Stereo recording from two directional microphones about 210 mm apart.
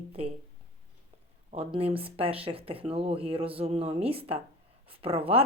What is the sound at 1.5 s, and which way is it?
Speech, 25° right (ahead or behind).